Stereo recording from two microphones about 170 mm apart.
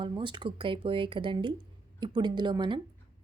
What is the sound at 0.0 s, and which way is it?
A woman's voice, 30° right (ahead or behind).